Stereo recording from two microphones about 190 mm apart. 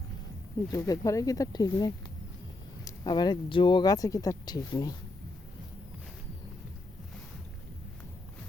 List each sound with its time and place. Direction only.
0.7 s speech: 15° left (ahead or behind)